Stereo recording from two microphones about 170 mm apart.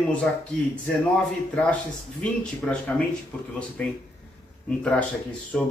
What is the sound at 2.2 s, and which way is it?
Speech, 5° left (ahead or behind).